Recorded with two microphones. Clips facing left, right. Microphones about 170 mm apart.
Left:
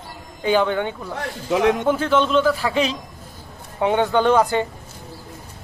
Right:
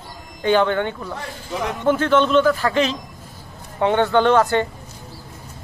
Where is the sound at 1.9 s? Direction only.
5° left (ahead or behind).